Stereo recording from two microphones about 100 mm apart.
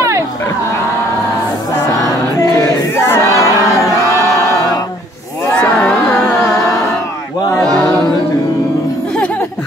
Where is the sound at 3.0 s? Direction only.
30° left (ahead or behind).